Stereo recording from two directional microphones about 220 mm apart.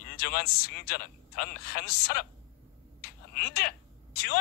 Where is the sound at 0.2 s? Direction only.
45° left (ahead or behind).